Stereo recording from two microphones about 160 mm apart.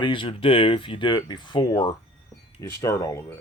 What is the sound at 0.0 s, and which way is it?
Speech, 30° left (ahead or behind).